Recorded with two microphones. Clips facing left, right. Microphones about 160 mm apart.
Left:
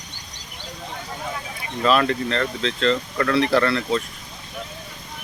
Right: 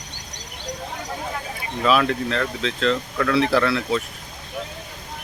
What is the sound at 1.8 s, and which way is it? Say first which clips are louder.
Speech: even; centre (ahead or behind).